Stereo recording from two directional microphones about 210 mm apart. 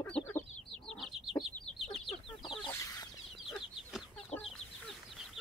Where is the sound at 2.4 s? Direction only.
20° left (ahead or behind).